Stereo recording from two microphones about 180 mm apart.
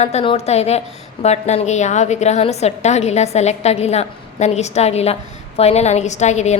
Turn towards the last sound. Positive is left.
turn(degrees=40)  # may be behind; listen again after turning